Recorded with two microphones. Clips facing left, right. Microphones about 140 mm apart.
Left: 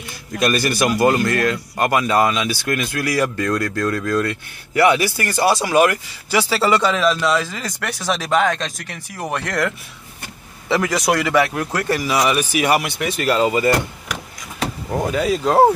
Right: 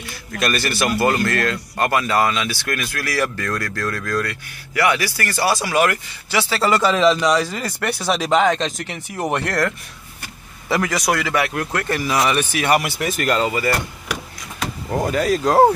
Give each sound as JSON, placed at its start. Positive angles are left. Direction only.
{"t": 0.3, "sound": "a man's voice", "side_deg": 15}
{"t": 7.0, "sound": "speech", "side_deg": -15}
{"t": 9.5, "sound": "a man's voice", "side_deg": 0}
{"t": 13.5, "sound": "speech", "side_deg": 20}
{"t": 14.9, "sound": "speech", "side_deg": 0}